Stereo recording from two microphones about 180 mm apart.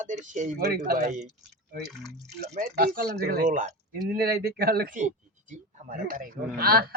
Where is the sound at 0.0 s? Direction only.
45° right (ahead or behind).